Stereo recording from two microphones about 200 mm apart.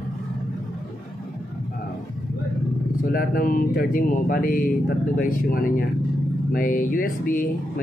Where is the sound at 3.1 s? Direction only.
45° left (ahead or behind).